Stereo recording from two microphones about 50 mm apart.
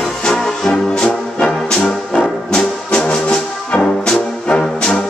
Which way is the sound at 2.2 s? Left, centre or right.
Centre.